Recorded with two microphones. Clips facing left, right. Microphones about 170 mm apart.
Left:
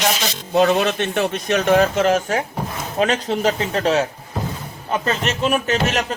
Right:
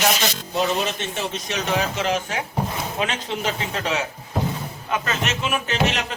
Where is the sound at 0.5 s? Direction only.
65° left (ahead or behind).